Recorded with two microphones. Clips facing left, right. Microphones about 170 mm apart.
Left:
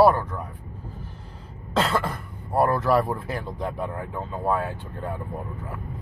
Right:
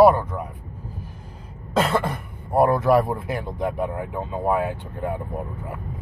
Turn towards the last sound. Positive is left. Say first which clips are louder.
# right 4 dB
turn(degrees=-15)  # may be behind; listen again after turning